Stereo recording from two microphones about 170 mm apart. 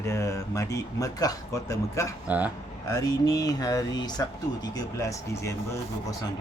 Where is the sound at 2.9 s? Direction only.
20° left (ahead or behind).